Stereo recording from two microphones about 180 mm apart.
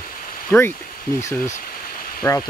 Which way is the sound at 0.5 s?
10° left (ahead or behind).